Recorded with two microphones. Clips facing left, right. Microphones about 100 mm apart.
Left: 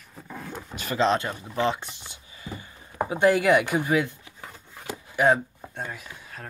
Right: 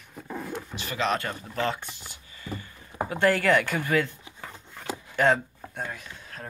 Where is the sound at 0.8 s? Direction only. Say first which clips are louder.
Left 5 dB; 35° left (ahead or behind).